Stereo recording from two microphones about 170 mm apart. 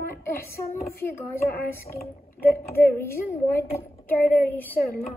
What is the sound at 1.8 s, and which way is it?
Speech, 60° left (ahead or behind).